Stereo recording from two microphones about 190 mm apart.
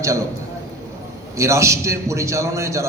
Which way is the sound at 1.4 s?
15° right (ahead or behind).